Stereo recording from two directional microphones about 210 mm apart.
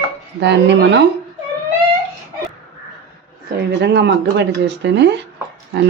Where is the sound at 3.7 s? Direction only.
55° right (ahead or behind).